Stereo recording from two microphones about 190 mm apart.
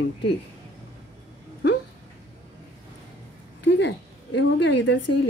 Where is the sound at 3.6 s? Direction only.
65° left (ahead or behind).